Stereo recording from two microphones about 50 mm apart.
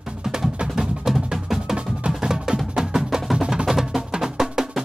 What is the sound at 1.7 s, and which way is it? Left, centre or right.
Music, right.